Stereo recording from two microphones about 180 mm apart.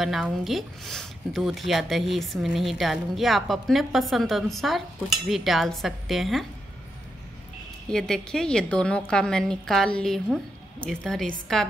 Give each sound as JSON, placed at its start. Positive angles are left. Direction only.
{"t": 0.0, "sound": "speech", "side_deg": 0}
{"t": 7.9, "sound": "speech", "side_deg": 5}